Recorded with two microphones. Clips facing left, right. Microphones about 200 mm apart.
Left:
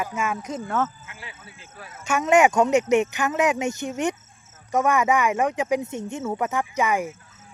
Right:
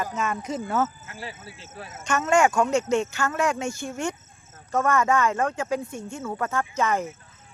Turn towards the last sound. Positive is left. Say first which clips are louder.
# left 1 dB
turn(degrees=15)  # may be behind; listen again after turning